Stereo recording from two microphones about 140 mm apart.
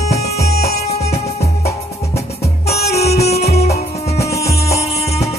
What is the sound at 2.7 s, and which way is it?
Music, 50° left (ahead or behind).